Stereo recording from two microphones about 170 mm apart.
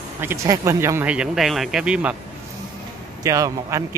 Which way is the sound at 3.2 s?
20° right (ahead or behind).